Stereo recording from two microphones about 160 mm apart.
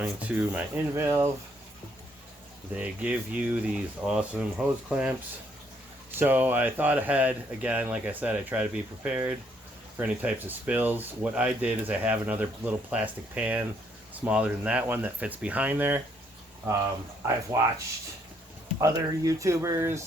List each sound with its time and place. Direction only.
0.0 s speech: 10° right (ahead or behind)
2.7 s speech: 5° right (ahead or behind)
6.1 s speech: 10° right (ahead or behind)
18.8 s speech: 20° right (ahead or behind)